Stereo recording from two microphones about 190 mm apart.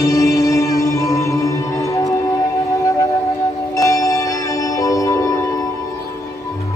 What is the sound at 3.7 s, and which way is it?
Music, 15° left (ahead or behind).